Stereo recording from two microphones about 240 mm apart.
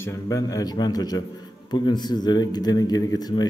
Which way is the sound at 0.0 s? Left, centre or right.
Centre.